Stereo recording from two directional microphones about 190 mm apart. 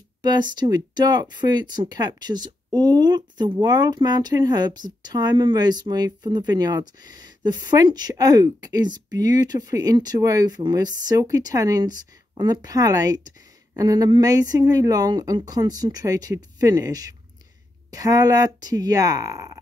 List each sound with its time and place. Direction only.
0.2 s speech: 20° right (ahead or behind)